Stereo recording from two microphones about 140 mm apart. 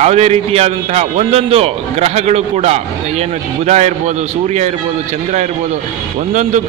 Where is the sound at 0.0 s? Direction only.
50° right (ahead or behind).